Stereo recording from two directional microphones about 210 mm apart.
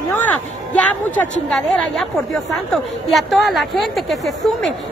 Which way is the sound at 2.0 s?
Centre (ahead or behind).